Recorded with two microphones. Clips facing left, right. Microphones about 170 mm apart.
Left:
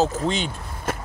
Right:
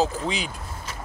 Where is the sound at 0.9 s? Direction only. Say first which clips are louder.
Left 12 dB; 55° left (ahead or behind).